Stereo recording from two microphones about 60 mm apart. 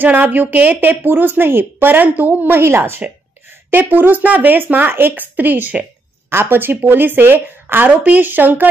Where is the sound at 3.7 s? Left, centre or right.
Right.